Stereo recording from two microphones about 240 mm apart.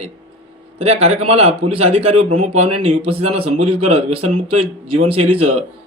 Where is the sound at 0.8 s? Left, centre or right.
Right.